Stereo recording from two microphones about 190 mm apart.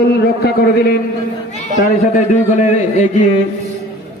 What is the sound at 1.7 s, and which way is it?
A man's voice, 40° left (ahead or behind).